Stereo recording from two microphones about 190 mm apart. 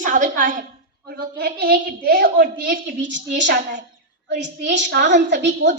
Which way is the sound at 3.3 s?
70° right (ahead or behind).